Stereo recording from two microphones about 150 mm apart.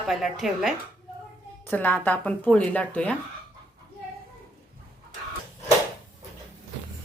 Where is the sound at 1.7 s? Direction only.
10° left (ahead or behind).